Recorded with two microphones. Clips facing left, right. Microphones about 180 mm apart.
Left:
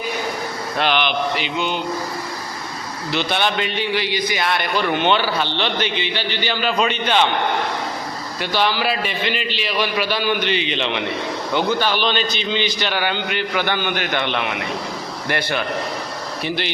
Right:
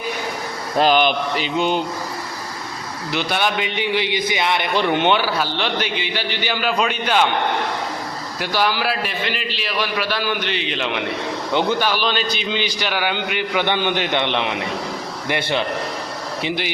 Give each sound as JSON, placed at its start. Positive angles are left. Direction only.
{"t": 0.8, "sound": "speech", "side_deg": -40}
{"t": 3.1, "sound": "a man's voice", "side_deg": -10}
{"t": 3.7, "sound": "a man's voice", "side_deg": -20}
{"t": 8.4, "sound": "a man's voice", "side_deg": -10}